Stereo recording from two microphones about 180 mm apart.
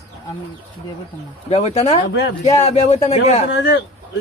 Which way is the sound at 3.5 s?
90° left.